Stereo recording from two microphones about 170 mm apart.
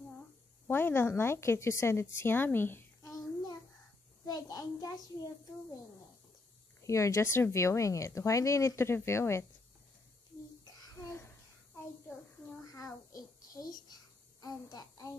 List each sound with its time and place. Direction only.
0.7 s a woman's voice: 10° left (ahead or behind)
6.8 s speech: 20° left (ahead or behind)
10.6 s child singing: 15° left (ahead or behind)
12.6 s a sound: 20° left (ahead or behind)
14.4 s a child's voice: 20° left (ahead or behind)